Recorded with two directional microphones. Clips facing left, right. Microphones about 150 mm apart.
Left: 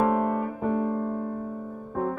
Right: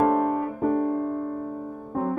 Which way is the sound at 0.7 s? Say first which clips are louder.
Right 3 dB; 45° right (ahead or behind).